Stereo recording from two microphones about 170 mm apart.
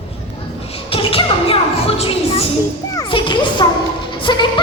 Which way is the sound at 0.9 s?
35° left (ahead or behind).